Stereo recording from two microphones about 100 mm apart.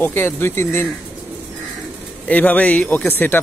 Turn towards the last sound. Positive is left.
turn(degrees=20)  # may be behind; listen again after turning